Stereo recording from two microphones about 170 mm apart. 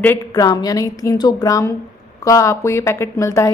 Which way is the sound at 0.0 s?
15° left (ahead or behind).